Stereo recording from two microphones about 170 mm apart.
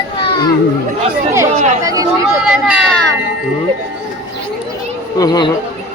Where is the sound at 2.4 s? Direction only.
5° right (ahead or behind).